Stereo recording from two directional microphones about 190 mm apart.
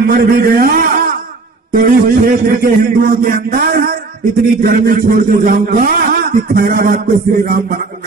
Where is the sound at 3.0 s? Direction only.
50° right (ahead or behind).